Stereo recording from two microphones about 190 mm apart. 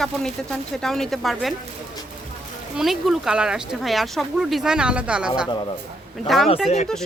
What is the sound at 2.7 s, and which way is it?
Speech, centre (ahead or behind).